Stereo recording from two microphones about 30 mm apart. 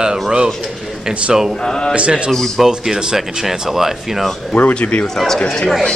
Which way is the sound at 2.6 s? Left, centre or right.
Centre.